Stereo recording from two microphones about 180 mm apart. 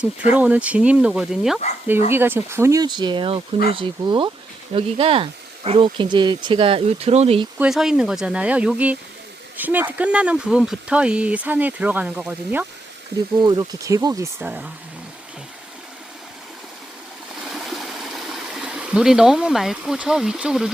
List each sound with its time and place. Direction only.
0.3 s speech: 10° right (ahead or behind); by 7.4 s 35° right (ahead or behind)
7.6 s speech: centre (ahead or behind)
13.4 s speech: 25° right (ahead or behind)
17.4 s stream: centre (ahead or behind)